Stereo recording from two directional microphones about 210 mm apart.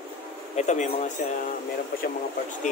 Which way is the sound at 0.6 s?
35° left (ahead or behind).